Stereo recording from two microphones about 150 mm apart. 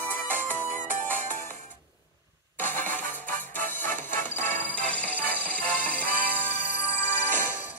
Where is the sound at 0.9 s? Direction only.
60° right (ahead or behind).